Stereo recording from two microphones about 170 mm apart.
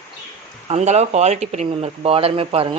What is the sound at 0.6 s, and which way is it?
Speech, 40° right (ahead or behind).